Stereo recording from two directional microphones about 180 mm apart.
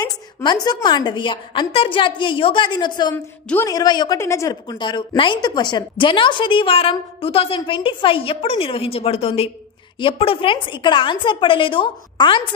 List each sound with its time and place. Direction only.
0.0 s a woman's voice: 25° left (ahead or behind)